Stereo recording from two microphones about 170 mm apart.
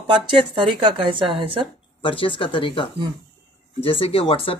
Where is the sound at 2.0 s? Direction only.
30° left (ahead or behind).